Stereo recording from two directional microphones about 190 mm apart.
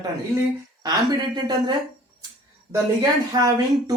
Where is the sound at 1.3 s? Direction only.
20° right (ahead or behind).